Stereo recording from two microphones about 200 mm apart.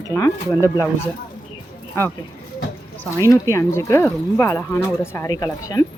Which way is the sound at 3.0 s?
15° left (ahead or behind).